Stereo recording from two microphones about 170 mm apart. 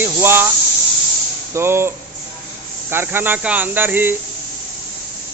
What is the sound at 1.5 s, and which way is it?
Speech, 15° right (ahead or behind).